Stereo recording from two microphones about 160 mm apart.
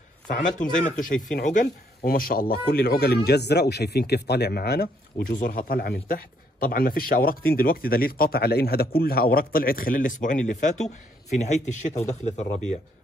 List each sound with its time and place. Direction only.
0.3 s speech: 55° left (ahead or behind); by 4.8 s 75° left (ahead or behind)
5.3 s a man's voice: 60° left (ahead or behind); by 12.2 s 45° left (ahead or behind)